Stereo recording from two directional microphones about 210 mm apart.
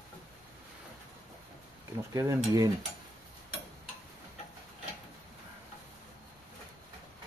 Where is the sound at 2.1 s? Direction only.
15° right (ahead or behind).